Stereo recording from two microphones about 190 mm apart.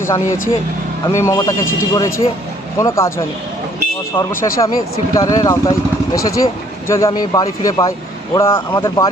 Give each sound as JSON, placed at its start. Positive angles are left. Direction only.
{"t": 0.0, "sound": "speech", "side_deg": 15}